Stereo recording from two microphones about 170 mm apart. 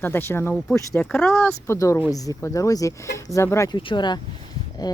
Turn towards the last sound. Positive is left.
turn(degrees=25)  # may be behind; listen again after turning